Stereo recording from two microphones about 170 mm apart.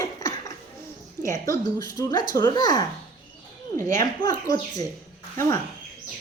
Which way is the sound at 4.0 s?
20° left (ahead or behind).